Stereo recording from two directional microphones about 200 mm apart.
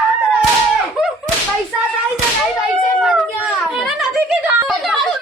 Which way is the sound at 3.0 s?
Centre (ahead or behind).